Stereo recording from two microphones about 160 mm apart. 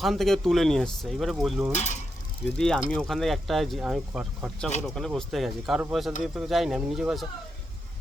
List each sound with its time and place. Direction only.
0.0 s speech: centre (ahead or behind)
1.7 s speech: 45° left (ahead or behind)
2.6 s speech: 5° left (ahead or behind)